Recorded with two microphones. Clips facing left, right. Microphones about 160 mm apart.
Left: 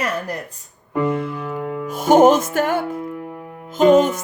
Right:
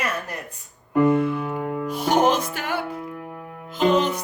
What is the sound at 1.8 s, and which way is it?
Speech, 45° left (ahead or behind).